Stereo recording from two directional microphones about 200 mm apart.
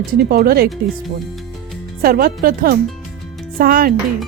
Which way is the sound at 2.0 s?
45° right (ahead or behind).